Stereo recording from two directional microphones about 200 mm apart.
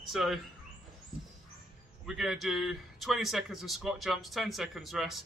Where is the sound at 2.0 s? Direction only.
Centre (ahead or behind).